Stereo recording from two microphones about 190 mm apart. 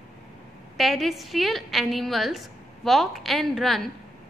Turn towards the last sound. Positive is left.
turn(degrees=0)  # may be behind; listen again after turning